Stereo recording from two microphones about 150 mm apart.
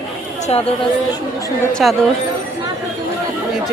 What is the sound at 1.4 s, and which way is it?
Chatter, 20° left (ahead or behind).